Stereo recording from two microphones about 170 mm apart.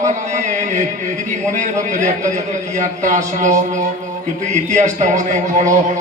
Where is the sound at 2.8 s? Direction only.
50° right (ahead or behind).